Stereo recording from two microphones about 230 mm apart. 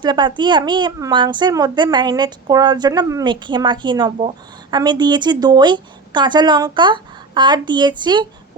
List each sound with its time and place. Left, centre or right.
0.0 s a woman's voice: centre